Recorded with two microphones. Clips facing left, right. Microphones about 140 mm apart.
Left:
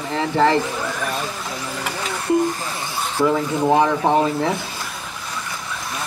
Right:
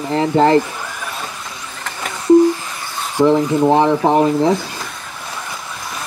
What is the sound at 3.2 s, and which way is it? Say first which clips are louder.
Speech: right 6 dB; 20° right (ahead or behind).